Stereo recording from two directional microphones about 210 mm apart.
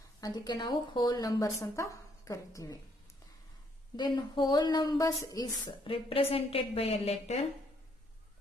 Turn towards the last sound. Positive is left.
turn(degrees=30)  # may be behind; listen again after turning